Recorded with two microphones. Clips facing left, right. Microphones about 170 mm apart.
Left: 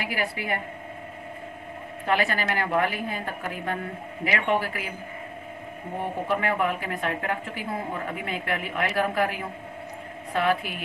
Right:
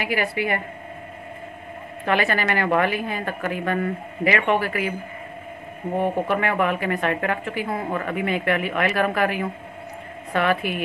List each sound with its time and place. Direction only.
0.0 s a woman's voice: 70° right (ahead or behind)
2.0 s a woman's voice: 75° right (ahead or behind)
5.9 s a woman's voice: 70° right (ahead or behind)